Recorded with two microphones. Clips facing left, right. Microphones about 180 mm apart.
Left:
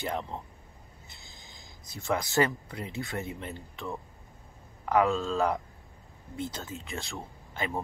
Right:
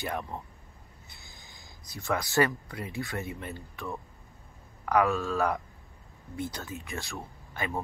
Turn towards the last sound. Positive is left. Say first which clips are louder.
# left 1 dB
turn(degrees=20)  # may be behind; listen again after turning